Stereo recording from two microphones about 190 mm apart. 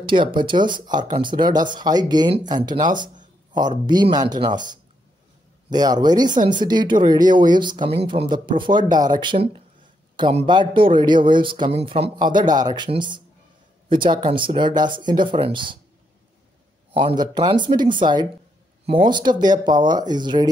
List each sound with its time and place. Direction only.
0.0 s speech: 25° right (ahead or behind)
5.7 s speech: 20° right (ahead or behind)
16.9 s speech: 25° right (ahead or behind)